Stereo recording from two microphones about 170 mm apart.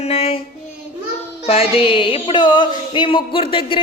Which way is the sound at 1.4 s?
35° left (ahead or behind).